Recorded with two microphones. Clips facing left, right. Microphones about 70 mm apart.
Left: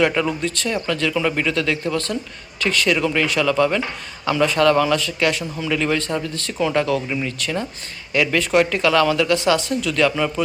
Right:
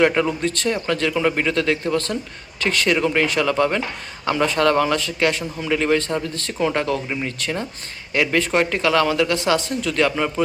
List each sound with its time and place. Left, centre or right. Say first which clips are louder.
0.0 s speech: right 1 dB; right